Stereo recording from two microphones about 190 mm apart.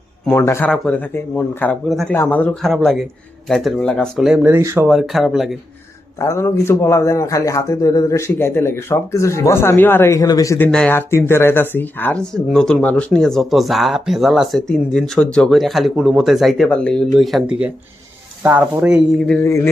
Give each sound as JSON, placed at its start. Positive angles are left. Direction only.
{"t": 0.3, "sound": "speech", "side_deg": 10}
{"t": 4.9, "sound": "speech", "side_deg": 0}
{"t": 6.1, "sound": "speech", "side_deg": 15}
{"t": 19.5, "sound": "speech", "side_deg": 15}